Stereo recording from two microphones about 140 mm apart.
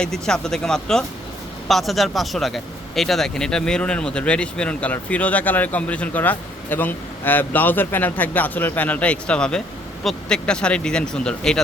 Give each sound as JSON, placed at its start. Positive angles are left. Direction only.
{"t": 0.0, "sound": "speech", "side_deg": 5}